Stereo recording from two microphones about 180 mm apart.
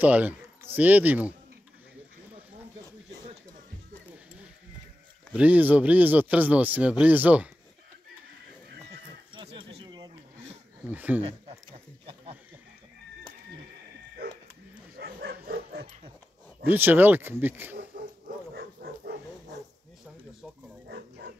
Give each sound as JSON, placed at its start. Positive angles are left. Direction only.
{"t": 0.0, "sound": "a sound", "side_deg": -10}
{"t": 0.7, "sound": "speech", "side_deg": -10}
{"t": 5.3, "sound": "speech", "side_deg": -10}
{"t": 9.3, "sound": "bird", "side_deg": -30}
{"t": 10.9, "sound": "speech", "side_deg": -10}
{"t": 11.7, "sound": "a sound", "side_deg": -30}
{"t": 15.0, "sound": "dog", "side_deg": -65}
{"t": 16.6, "sound": "speech", "side_deg": -10}
{"t": 17.9, "sound": "dog", "side_deg": -55}